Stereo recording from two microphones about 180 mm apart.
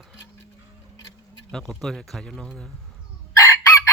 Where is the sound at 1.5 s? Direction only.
Centre (ahead or behind).